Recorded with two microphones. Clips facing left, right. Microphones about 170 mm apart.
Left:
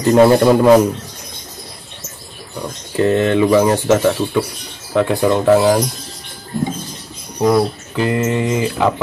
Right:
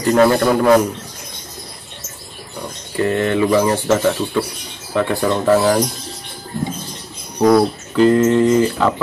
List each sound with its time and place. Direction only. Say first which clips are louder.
0.0 s a man's voice: left 3 dB; 20° left (ahead or behind)
3.0 s speech: left 3 dB; 15° left (ahead or behind)
7.4 s speech: right 2 dB; 10° left (ahead or behind)